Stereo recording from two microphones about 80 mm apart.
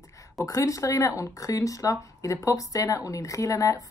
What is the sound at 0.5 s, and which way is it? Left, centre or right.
Speech, left.